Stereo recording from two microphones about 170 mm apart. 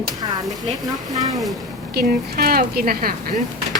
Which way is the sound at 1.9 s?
60° right (ahead or behind).